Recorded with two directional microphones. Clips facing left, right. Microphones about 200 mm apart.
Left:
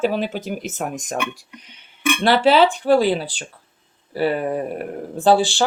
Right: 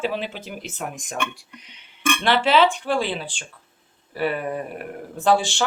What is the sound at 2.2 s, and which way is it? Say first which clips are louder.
Speech: left 4 dB; 40° left (ahead or behind).